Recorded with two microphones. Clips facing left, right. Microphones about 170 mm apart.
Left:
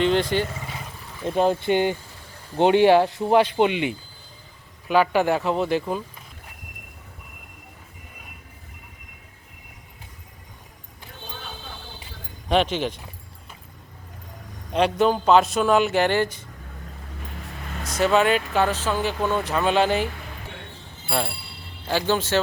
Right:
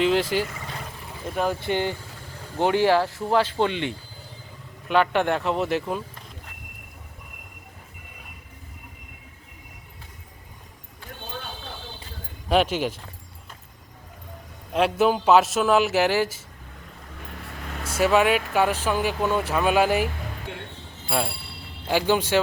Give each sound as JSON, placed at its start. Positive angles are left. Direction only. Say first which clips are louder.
{"t": 0.0, "sound": "a man's voice", "louder": "left 1 dB", "side_deg": -5}
{"t": 1.4, "sound": "a man's voice", "louder": "left 5 dB", "side_deg": 20}
{"t": 12.5, "sound": "speech", "louder": "even", "side_deg": -5}
{"t": 14.7, "sound": "a man's voice", "louder": "left 1 dB", "side_deg": 0}
{"t": 17.9, "sound": "speech", "louder": "even", "side_deg": -5}
{"t": 21.1, "sound": "a man's voice", "louder": "even", "side_deg": 0}
{"t": 21.8, "sound": "speech", "louder": "right 1 dB", "side_deg": -15}